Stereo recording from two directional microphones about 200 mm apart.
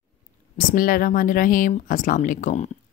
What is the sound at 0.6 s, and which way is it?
Speech, 45° left (ahead or behind).